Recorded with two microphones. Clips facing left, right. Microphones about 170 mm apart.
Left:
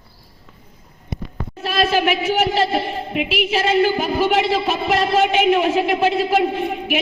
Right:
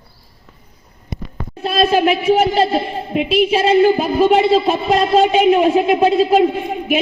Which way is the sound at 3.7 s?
30° right (ahead or behind).